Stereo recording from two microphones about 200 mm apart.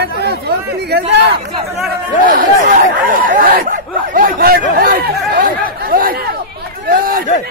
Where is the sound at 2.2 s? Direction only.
40° right (ahead or behind).